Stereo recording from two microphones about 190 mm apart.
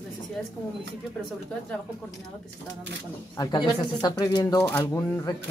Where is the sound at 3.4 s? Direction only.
20° left (ahead or behind).